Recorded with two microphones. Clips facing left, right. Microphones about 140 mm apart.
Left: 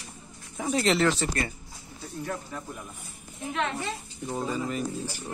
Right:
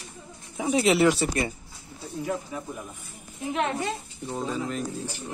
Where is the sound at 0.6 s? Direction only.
5° right (ahead or behind).